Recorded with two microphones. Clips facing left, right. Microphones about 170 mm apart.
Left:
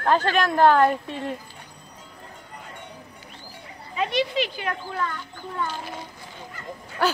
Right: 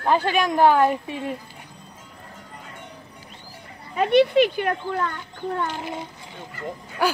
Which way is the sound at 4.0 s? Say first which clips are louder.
Right 8 dB; 55° right (ahead or behind).